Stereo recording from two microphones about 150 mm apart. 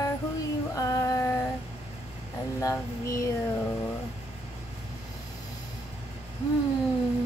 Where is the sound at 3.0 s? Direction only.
20° left (ahead or behind).